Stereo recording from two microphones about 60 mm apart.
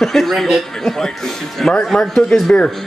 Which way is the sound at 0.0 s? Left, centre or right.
Centre.